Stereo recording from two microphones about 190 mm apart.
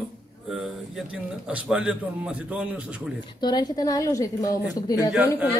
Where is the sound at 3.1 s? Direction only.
20° left (ahead or behind).